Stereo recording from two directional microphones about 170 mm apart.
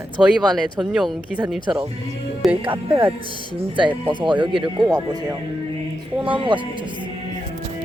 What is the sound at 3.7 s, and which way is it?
Speech, 30° right (ahead or behind).